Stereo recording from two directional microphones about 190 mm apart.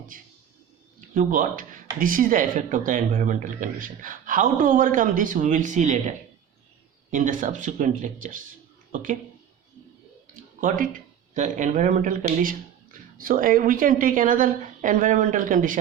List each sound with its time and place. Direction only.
0.1 s speech: 45° right (ahead or behind)
10.6 s speech: 45° right (ahead or behind)